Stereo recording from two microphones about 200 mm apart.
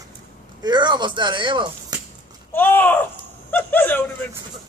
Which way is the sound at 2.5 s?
10° left (ahead or behind).